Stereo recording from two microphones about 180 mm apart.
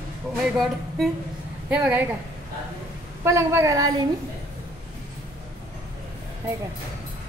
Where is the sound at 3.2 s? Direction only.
15° right (ahead or behind).